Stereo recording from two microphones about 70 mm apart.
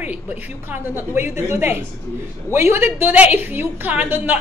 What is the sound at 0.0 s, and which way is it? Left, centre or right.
A woman's voice, right.